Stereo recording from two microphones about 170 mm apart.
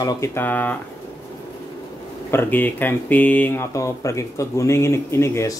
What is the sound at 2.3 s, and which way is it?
Speech, 10° left (ahead or behind).